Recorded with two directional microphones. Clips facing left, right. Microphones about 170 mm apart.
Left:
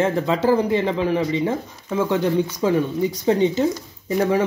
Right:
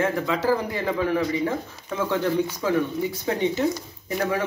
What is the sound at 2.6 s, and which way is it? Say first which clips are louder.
Speech: left 4 dB; 25° left (ahead or behind).